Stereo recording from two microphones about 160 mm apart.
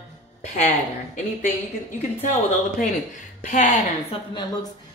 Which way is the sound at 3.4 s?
50° left (ahead or behind).